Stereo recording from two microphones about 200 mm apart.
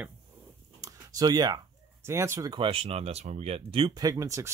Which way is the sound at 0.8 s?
20° right (ahead or behind).